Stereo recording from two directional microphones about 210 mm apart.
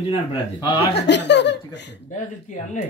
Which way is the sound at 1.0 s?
55° left (ahead or behind).